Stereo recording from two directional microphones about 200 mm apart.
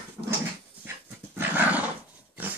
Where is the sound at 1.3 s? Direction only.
10° right (ahead or behind).